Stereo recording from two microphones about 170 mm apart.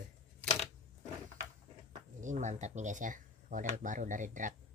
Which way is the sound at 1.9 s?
45° right (ahead or behind).